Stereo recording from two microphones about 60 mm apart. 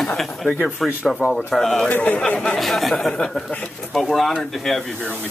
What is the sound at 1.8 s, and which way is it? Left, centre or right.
Speech, left.